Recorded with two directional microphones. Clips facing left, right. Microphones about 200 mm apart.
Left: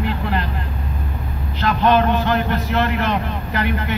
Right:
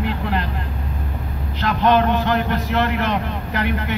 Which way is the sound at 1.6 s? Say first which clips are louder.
Left 1 dB; 15° right (ahead or behind).